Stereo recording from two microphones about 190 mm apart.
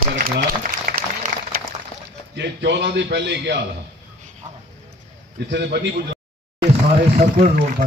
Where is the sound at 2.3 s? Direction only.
65° right (ahead or behind).